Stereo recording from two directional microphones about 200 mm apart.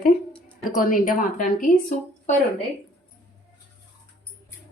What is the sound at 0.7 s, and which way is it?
Speech, 45° left (ahead or behind).